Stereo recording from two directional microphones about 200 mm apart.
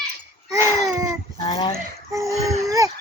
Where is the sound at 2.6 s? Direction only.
15° right (ahead or behind).